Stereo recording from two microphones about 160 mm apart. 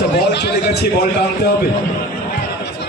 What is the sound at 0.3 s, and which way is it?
Speech, 90° left.